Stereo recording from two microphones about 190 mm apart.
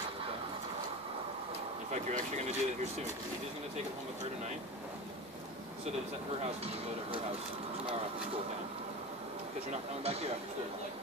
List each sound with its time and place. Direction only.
1.9 s speech: 35° right (ahead or behind)
6.4 s speech: 30° right (ahead or behind)
9.7 s speech: 30° right (ahead or behind)